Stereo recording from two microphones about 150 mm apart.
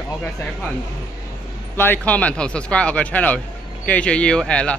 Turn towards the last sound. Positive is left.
turn(degrees=5)  # may be behind; listen again after turning